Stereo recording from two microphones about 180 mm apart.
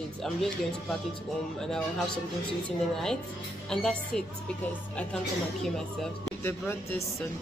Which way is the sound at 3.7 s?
5° left (ahead or behind).